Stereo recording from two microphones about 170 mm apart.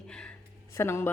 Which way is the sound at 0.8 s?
15° left (ahead or behind).